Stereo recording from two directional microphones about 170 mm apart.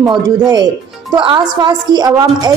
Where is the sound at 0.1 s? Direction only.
25° right (ahead or behind).